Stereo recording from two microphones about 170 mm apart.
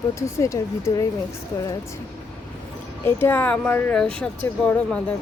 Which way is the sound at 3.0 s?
15° left (ahead or behind).